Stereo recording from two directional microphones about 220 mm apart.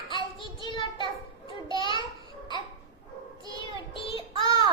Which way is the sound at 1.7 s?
20° left (ahead or behind).